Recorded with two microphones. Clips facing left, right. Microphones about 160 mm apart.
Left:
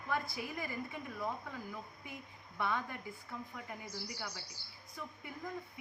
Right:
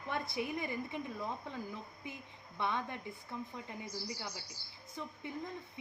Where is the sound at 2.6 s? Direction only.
25° right (ahead or behind).